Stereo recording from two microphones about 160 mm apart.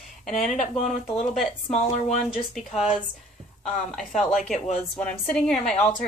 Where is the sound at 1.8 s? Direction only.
45° left (ahead or behind).